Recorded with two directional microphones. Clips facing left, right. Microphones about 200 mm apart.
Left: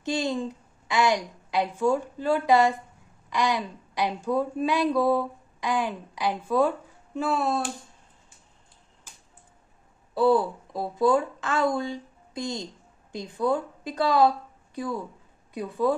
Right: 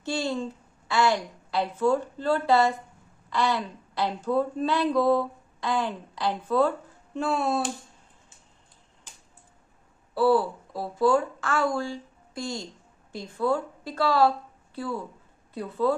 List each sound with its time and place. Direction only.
0.0 s a woman's voice: 15° left (ahead or behind); by 7.7 s centre (ahead or behind)
10.1 s a woman's voice: 20° left (ahead or behind)